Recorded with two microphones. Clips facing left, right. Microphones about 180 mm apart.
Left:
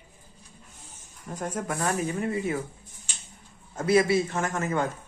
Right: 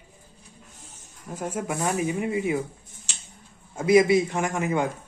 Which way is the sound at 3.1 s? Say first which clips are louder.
Right 2 dB; 80° right.